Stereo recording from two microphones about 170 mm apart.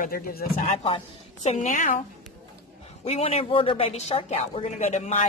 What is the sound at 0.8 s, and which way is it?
A woman's voice, 35° left (ahead or behind).